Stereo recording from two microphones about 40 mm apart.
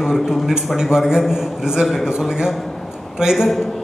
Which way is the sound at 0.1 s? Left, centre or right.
Centre.